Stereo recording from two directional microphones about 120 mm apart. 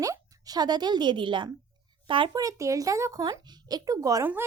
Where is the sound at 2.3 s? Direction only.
30° right (ahead or behind).